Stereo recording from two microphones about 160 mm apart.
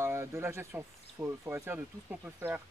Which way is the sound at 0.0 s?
15° right (ahead or behind).